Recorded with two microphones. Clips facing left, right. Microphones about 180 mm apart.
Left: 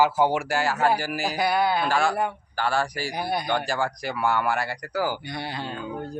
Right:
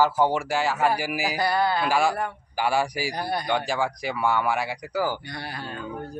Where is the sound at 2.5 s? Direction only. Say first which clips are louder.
Right 2 dB; 10° right (ahead or behind).